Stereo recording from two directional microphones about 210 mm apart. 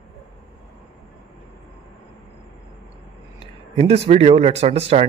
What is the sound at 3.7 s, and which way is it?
Speech, 30° right (ahead or behind).